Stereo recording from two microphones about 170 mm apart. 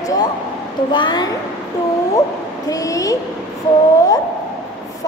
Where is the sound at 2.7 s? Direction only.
20° left (ahead or behind).